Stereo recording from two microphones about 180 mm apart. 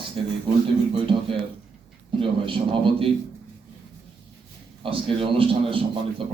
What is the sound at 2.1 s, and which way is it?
Speech, 30° right (ahead or behind).